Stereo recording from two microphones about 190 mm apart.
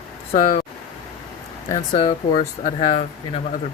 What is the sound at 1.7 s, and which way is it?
Speech, 25° left (ahead or behind).